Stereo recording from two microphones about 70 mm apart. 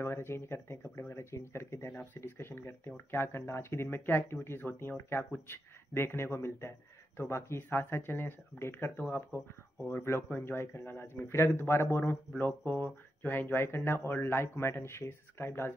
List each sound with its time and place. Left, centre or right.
0.0 s speech: left